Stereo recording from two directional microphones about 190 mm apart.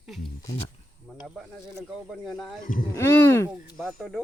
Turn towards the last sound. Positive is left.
turn(degrees=0)  # may be behind; listen again after turning